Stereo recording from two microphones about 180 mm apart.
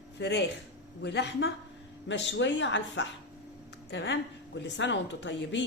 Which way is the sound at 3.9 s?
70° left (ahead or behind).